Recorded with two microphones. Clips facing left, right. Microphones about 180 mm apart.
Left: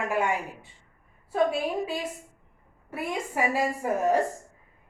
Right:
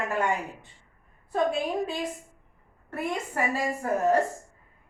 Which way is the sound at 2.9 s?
10° left (ahead or behind).